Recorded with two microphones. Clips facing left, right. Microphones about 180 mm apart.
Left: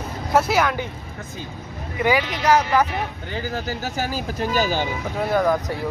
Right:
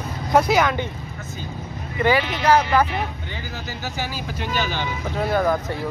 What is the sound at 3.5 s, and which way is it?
Speech, 45° left (ahead or behind).